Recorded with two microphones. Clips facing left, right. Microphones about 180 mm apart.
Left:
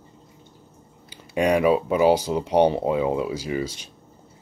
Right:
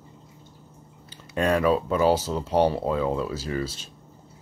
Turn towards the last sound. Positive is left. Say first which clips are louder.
# left 2 dB
turn(degrees=15)  # may be behind; listen again after turning